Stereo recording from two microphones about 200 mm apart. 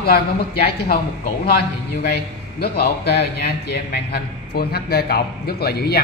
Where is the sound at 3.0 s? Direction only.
55° left (ahead or behind).